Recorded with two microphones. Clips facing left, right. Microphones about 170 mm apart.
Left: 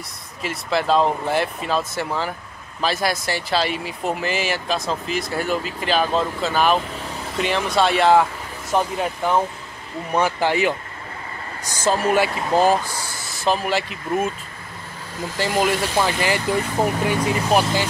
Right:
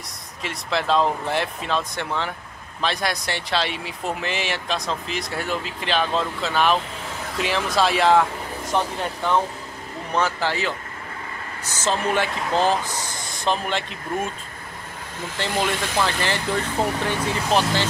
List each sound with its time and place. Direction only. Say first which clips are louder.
0.4 s speech: left 3 dB; 5° left (ahead or behind)
15.3 s speech: left 4 dB; 5° left (ahead or behind)